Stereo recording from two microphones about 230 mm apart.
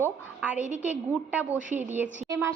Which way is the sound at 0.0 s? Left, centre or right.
Centre.